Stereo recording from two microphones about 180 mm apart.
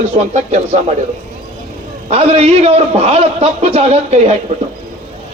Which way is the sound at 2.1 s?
35° right (ahead or behind).